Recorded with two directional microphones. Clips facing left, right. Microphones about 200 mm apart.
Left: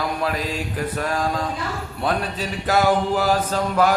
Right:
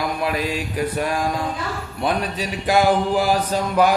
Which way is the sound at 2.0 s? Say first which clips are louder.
Right 1 dB; 15° right (ahead or behind).